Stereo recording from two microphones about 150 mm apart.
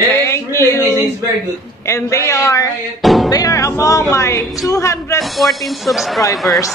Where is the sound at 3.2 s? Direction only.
25° left (ahead or behind).